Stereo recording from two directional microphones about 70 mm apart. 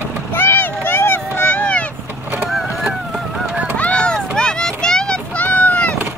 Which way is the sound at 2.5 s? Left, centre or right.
Centre.